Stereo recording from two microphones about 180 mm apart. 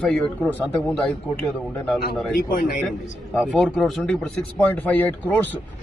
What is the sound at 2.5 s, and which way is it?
Speech, 60° left (ahead or behind).